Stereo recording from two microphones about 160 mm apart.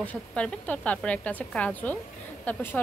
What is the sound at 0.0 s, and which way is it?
A woman's voice, 10° left (ahead or behind).